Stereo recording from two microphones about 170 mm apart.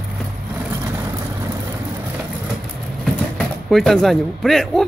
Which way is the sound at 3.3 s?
Centre (ahead or behind).